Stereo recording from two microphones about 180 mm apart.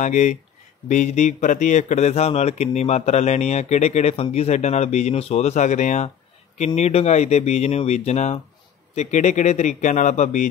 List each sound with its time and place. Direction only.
0.0 s speech: 45° left (ahead or behind)